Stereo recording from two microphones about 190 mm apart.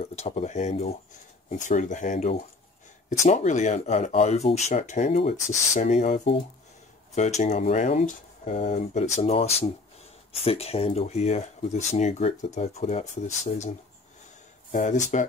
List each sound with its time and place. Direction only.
0.0 s speech: 35° left (ahead or behind)
14.7 s speech: 40° left (ahead or behind)